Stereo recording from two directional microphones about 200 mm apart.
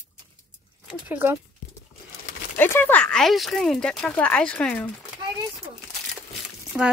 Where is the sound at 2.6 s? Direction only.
10° left (ahead or behind).